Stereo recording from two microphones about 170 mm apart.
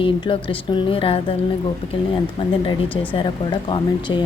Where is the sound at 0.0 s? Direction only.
30° left (ahead or behind).